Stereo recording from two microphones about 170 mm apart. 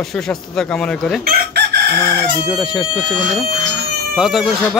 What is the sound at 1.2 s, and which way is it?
Chicken, 70° right (ahead or behind).